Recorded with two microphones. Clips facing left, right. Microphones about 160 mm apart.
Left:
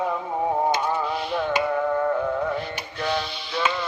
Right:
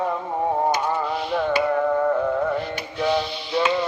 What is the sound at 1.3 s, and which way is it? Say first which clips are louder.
Music: right 4 dB; centre (ahead or behind).